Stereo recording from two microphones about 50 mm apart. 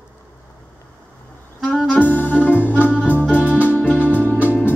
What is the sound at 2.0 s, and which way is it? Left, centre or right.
Music, left.